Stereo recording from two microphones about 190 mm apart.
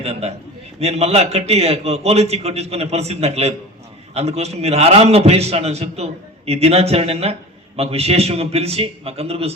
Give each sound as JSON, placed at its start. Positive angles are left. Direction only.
{"t": 0.0, "sound": "a man's voice", "side_deg": -35}